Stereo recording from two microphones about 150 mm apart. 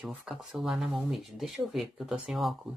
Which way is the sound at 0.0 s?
5° right (ahead or behind).